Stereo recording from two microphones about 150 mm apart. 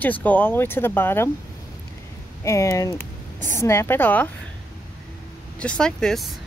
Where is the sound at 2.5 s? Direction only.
20° left (ahead or behind).